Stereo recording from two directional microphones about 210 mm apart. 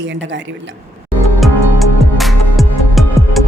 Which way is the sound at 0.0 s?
60° right (ahead or behind).